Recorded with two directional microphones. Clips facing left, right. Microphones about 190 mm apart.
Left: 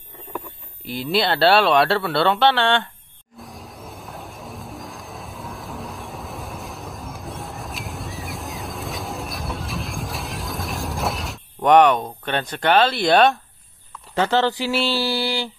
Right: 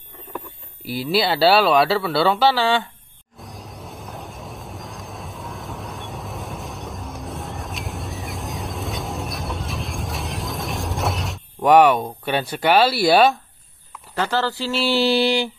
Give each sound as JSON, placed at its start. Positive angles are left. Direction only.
{"t": 0.8, "sound": "speech", "side_deg": -5}
{"t": 3.3, "sound": "music", "side_deg": 0}
{"t": 14.1, "sound": "speech", "side_deg": 20}
{"t": 14.9, "sound": "a sound", "side_deg": -20}